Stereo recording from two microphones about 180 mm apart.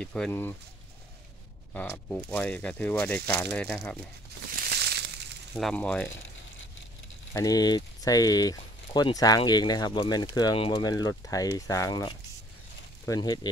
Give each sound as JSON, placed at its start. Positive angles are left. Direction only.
{"t": 0.0, "sound": "speech", "side_deg": 5}
{"t": 1.7, "sound": "speech", "side_deg": 5}
{"t": 4.6, "sound": "crushing", "side_deg": -65}
{"t": 5.5, "sound": "speech", "side_deg": 0}
{"t": 7.3, "sound": "speech", "side_deg": 20}